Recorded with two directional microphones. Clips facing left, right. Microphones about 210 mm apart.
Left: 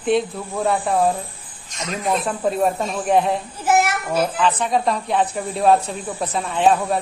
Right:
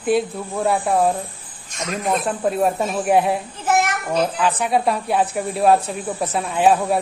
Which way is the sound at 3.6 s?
10° left (ahead or behind).